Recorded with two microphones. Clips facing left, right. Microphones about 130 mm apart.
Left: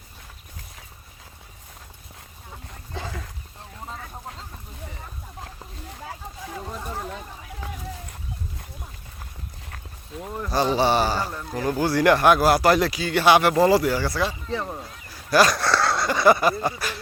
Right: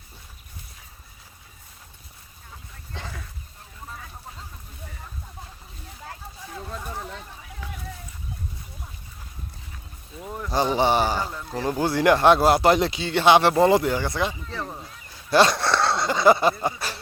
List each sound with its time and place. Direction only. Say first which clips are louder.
2.9 s a sound: left 4 dB; 10° left (ahead or behind)
6.8 s a sound: left 2 dB; 10° left (ahead or behind)
9.6 s dog: left 3 dB; 65° left (ahead or behind)
10.5 s speech: even; 20° right (ahead or behind)
11.3 s speech: left 1 dB; 5° left (ahead or behind)
11.7 s speech: left 1 dB; 20° right (ahead or behind)
14.4 s speech: left 4 dB; 5° left (ahead or behind)
15.3 s a sound: even; 25° right (ahead or behind)
16.6 s speech: left 1 dB; 20° right (ahead or behind)